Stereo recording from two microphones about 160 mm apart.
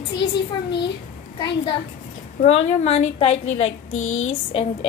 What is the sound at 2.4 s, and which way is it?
Speech, 40° left (ahead or behind).